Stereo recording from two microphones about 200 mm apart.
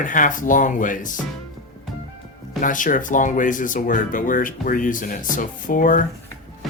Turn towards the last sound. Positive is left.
turn(degrees=40)  # may be behind; listen again after turning